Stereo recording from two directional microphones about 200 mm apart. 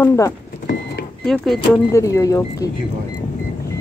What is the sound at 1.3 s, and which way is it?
Speech, 5° left (ahead or behind).